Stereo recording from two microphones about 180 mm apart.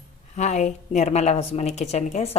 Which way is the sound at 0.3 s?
40° left (ahead or behind).